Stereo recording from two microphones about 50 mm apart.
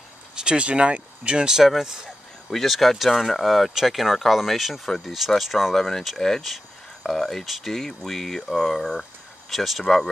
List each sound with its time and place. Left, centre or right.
0.4 s speech: centre
1.7 s speech: centre